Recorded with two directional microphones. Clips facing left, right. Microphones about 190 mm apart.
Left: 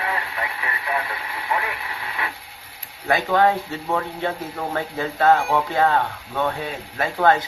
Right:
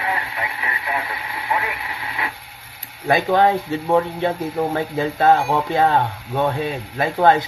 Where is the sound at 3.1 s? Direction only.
15° right (ahead or behind).